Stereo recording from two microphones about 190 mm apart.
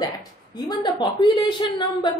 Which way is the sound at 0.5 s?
20° left (ahead or behind).